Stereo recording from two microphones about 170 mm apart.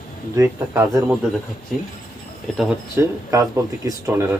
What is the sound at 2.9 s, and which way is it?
Speech, 20° right (ahead or behind).